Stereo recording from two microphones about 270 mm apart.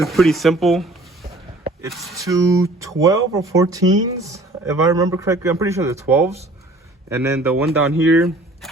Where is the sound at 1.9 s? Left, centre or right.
Centre.